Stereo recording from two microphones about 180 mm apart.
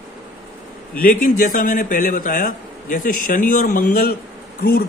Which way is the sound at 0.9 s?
50° left (ahead or behind).